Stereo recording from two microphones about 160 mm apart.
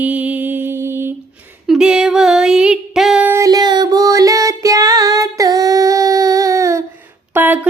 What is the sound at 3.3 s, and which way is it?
Music, 20° right (ahead or behind).